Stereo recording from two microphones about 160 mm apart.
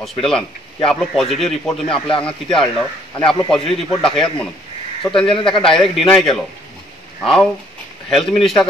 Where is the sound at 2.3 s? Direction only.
30° left (ahead or behind).